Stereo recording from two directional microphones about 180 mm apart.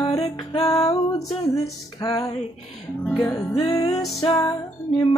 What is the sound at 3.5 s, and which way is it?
Music, 30° left (ahead or behind).